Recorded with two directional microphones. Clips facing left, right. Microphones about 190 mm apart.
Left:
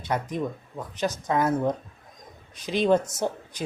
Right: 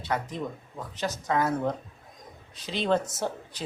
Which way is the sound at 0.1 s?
20° left (ahead or behind).